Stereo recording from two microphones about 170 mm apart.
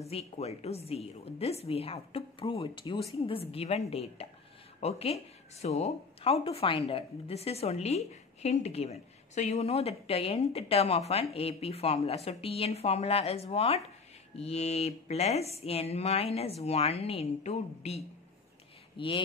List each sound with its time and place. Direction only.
0.1 s a woman's voice: 40° left (ahead or behind)